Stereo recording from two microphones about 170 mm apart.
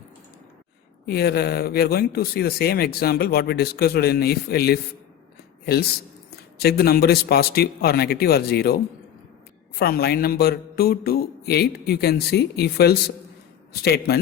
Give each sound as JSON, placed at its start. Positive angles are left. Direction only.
{"t": 1.0, "sound": "speech", "side_deg": 65}
{"t": 6.6, "sound": "a man's voice", "side_deg": 65}